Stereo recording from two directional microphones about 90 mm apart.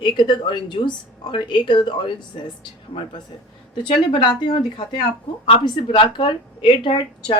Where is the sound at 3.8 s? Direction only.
85° left.